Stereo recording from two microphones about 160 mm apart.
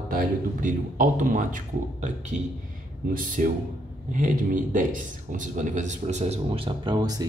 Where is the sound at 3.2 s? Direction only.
55° right (ahead or behind).